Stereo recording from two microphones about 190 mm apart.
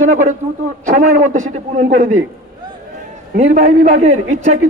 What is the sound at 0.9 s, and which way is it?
A man's voice, 40° right (ahead or behind).